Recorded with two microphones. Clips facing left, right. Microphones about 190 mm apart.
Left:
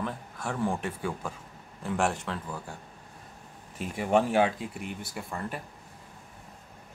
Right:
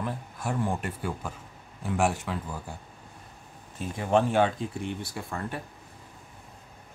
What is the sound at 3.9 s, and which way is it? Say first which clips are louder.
Speech: even; 10° left (ahead or behind).